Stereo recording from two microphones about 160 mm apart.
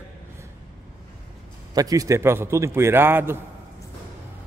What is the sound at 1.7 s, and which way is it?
Speech, 20° right (ahead or behind).